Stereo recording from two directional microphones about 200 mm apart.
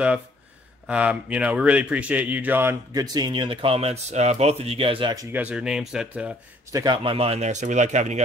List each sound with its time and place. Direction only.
0.8 s speech: 5° right (ahead or behind)
6.7 s speech: 20° right (ahead or behind); by 8.2 s 35° right (ahead or behind)